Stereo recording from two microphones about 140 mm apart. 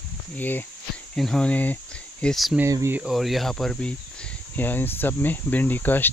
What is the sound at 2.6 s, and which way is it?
Speech, 20° right (ahead or behind).